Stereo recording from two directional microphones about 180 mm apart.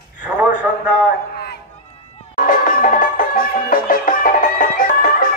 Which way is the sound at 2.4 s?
50° left (ahead or behind).